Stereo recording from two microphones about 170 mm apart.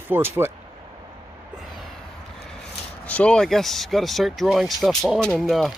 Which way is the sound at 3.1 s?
5° left (ahead or behind).